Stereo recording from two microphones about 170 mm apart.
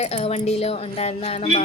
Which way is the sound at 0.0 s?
35° left (ahead or behind).